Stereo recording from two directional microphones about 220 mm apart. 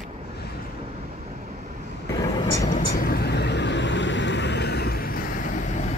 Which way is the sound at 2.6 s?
40° left (ahead or behind).